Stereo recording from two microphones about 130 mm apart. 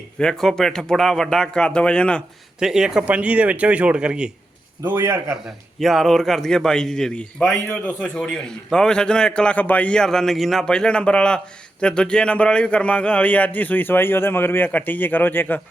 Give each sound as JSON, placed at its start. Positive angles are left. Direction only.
{"t": 0.2, "sound": "a man's voice", "side_deg": 5}
{"t": 2.6, "sound": "speech", "side_deg": -5}
{"t": 4.9, "sound": "a man's voice", "side_deg": -25}
{"t": 5.5, "sound": "a man's voice", "side_deg": 0}